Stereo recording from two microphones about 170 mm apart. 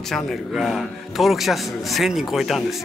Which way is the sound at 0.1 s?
Centre (ahead or behind).